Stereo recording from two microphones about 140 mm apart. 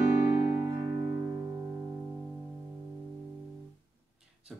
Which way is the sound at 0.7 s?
25° right (ahead or behind).